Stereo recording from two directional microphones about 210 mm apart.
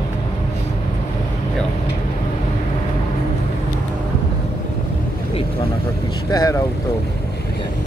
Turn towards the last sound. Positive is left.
turn(degrees=15)  # may be behind; listen again after turning